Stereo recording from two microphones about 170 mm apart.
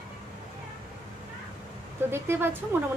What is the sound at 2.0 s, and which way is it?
Speech, 15° right (ahead or behind).